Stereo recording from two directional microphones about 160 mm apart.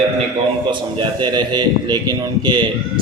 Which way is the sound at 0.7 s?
30° right (ahead or behind).